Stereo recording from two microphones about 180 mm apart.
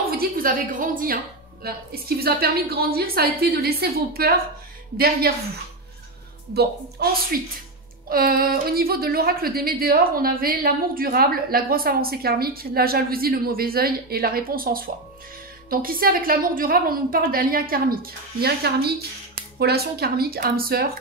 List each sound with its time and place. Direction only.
0.1 s a woman's voice: 55° right (ahead or behind)
6.5 s a woman's voice: 60° right (ahead or behind)